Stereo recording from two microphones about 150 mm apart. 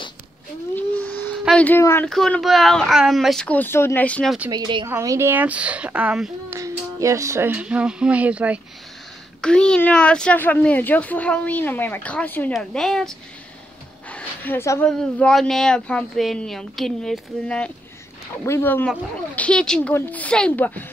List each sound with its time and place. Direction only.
0.7 s a sound: 10° left (ahead or behind)
1.4 s speech: 5° left (ahead or behind)
2.0 s speech: 5° left (ahead or behind)
4.5 s a woman's voice: 30° right (ahead or behind)
4.8 s a woman's voice: 20° right (ahead or behind)
6.5 s speech: 20° right (ahead or behind)
9.4 s speech: 5° left (ahead or behind)
14.1 s a sound: 10° left (ahead or behind)
14.9 s speech: 5° left (ahead or behind)
18.4 s speech: 15° left (ahead or behind)